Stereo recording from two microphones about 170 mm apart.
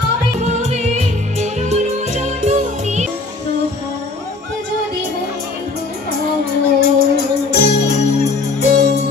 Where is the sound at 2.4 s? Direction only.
40° right (ahead or behind).